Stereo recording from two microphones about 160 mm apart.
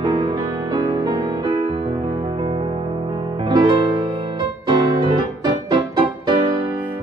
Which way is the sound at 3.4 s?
30° right (ahead or behind).